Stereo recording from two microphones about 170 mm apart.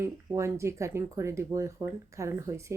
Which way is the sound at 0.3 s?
15° right (ahead or behind).